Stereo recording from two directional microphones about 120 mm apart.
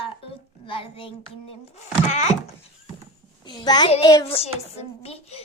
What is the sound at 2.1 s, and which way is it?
Speech, 65° left (ahead or behind).